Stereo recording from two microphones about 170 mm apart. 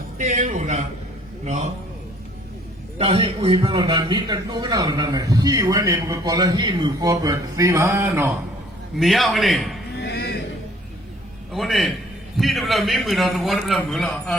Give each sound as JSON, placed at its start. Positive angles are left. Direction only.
{"t": 0.2, "sound": "a man's voice", "side_deg": -45}
{"t": 3.0, "sound": "a man's voice", "side_deg": -35}
{"t": 9.0, "sound": "a man's voice", "side_deg": 0}
{"t": 10.0, "sound": "a sound", "side_deg": 70}
{"t": 11.5, "sound": "a man's voice", "side_deg": 0}